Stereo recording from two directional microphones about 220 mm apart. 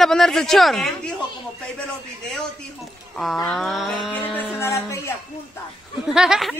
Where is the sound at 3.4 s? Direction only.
Centre (ahead or behind).